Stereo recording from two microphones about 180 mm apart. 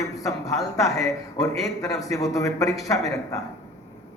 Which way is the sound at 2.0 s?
20° left (ahead or behind).